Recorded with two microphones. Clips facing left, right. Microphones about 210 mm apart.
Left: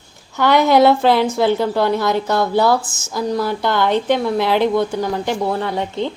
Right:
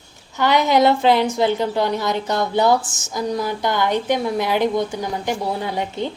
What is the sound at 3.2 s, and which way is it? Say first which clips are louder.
A woman's voice: left 3 dB; 15° right (ahead or behind).